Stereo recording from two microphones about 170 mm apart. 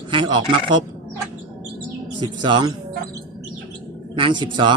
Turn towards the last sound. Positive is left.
turn(degrees=-25)  # may be behind; listen again after turning